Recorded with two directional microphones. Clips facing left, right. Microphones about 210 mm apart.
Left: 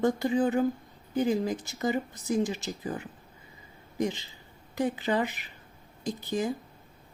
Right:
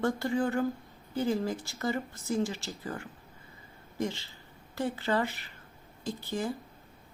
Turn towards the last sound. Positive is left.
turn(degrees=15)  # may be behind; listen again after turning